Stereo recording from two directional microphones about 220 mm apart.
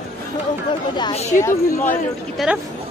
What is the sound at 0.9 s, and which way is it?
Speech, 25° left (ahead or behind).